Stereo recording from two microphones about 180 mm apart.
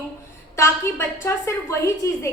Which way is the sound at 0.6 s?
15° left (ahead or behind).